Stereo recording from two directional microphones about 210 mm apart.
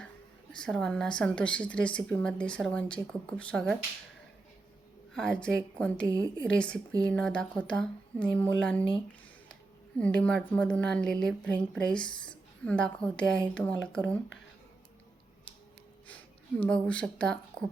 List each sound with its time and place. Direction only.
0.5 s a woman's voice: 5° left (ahead or behind)
5.1 s a woman's voice: 5° left (ahead or behind)
10.0 s a woman's voice: 5° left (ahead or behind)
16.0 s speech: 5° left (ahead or behind)